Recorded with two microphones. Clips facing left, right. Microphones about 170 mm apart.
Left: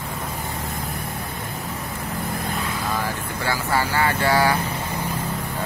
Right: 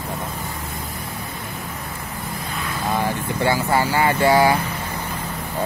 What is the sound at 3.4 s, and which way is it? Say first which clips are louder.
Speech: right 4 dB; 15° right (ahead or behind).